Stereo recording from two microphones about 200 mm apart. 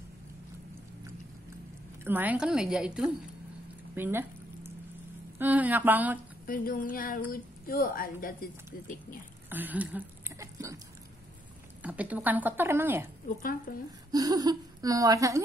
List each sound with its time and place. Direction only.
2.0 s a woman's voice: 10° right (ahead or behind)
5.4 s speech: 10° right (ahead or behind)
6.4 s a woman's voice: 45° left (ahead or behind)
9.5 s a sound: 10° right (ahead or behind)
11.8 s speech: 5° right (ahead or behind)
13.4 s a woman's voice: 45° left (ahead or behind)
14.1 s speech: 20° right (ahead or behind)